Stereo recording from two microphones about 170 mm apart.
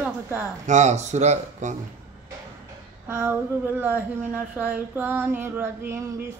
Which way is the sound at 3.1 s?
10° right (ahead or behind).